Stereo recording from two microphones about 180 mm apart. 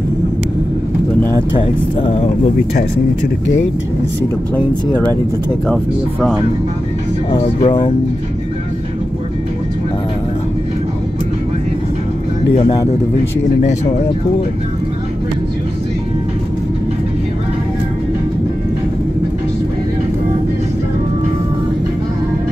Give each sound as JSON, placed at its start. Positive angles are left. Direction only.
{"t": 2.0, "sound": "speech", "side_deg": 30}
{"t": 7.6, "sound": "speech", "side_deg": 25}